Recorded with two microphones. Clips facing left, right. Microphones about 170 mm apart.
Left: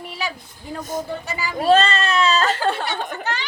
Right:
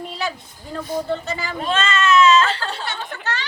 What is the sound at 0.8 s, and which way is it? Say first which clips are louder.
Speech: right 2 dB; 45° left (ahead or behind).